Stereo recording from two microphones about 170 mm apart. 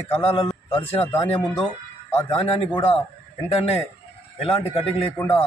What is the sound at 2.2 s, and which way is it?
Speech, 30° left (ahead or behind).